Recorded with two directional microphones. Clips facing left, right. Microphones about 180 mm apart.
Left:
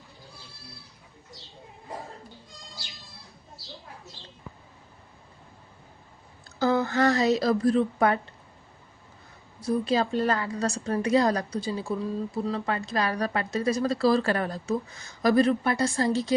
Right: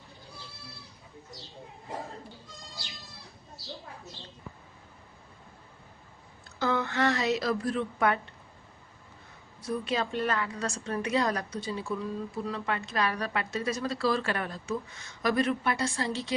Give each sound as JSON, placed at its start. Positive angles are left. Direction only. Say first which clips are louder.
{"t": 6.6, "sound": "speech", "louder": "left 5 dB", "side_deg": 35}
{"t": 9.6, "sound": "speech", "louder": "left 6 dB", "side_deg": 35}